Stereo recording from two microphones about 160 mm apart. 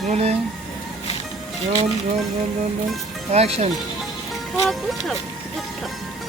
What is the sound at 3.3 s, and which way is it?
Speech, 40° right (ahead or behind).